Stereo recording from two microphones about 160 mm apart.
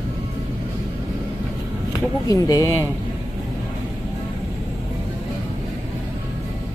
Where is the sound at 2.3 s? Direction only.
20° left (ahead or behind).